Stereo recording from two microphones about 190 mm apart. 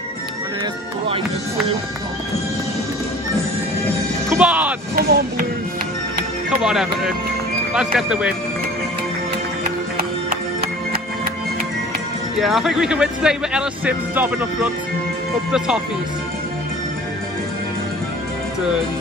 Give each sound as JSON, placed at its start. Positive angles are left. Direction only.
{"t": 4.4, "sound": "a sound", "side_deg": -5}
{"t": 4.9, "sound": "music", "side_deg": -45}
{"t": 6.6, "sound": "speech", "side_deg": 0}
{"t": 12.4, "sound": "speech", "side_deg": 0}